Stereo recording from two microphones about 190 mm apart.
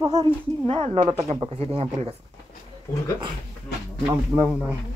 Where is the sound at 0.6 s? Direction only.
30° right (ahead or behind).